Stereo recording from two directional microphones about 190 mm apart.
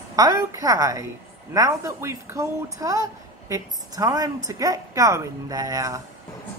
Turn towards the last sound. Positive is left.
turn(degrees=-20)  # may be behind; listen again after turning